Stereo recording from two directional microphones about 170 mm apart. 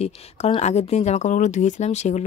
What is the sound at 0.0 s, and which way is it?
Speech, 40° left (ahead or behind).